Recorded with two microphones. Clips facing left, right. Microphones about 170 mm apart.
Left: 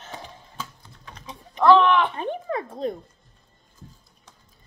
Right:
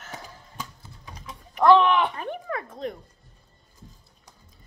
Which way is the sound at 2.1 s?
25° left (ahead or behind).